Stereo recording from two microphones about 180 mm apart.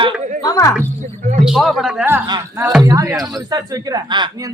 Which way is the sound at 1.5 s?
Centre (ahead or behind).